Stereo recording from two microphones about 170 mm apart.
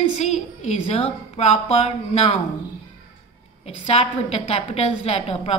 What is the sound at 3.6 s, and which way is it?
A woman's voice, 35° left (ahead or behind).